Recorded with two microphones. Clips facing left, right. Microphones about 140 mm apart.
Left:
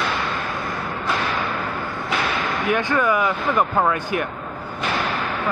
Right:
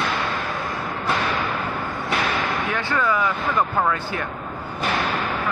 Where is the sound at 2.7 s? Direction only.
15° left (ahead or behind).